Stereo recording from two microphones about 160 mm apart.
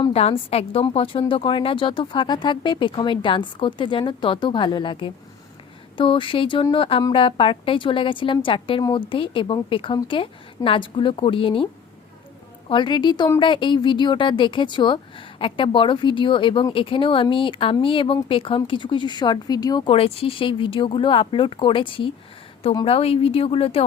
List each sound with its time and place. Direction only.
0.0 s a woman's voice: 40° left (ahead or behind)